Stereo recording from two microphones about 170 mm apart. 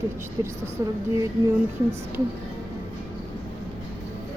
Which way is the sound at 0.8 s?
20° right (ahead or behind).